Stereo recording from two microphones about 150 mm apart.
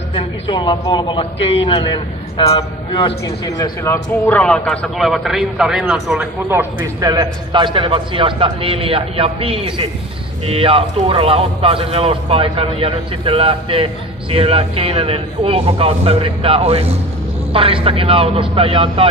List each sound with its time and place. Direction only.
0.1 s a man's voice: 30° left (ahead or behind); by 6.2 s 5° right (ahead or behind)
6.8 s speech: 25° right (ahead or behind)